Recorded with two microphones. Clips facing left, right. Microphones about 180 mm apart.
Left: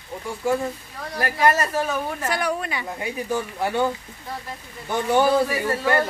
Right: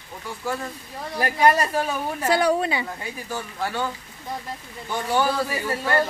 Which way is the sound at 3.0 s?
20° left (ahead or behind).